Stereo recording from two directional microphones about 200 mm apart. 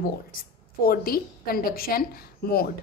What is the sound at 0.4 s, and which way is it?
A woman's voice, 45° left (ahead or behind).